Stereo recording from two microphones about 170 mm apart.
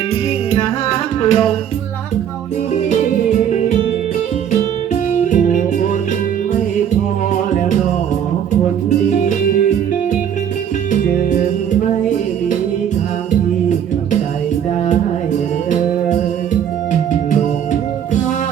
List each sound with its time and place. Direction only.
1.2 s music: 35° left (ahead or behind)
5.2 s music: 50° left (ahead or behind)
9.2 s music: 45° left (ahead or behind)
10.9 s music: 50° left (ahead or behind)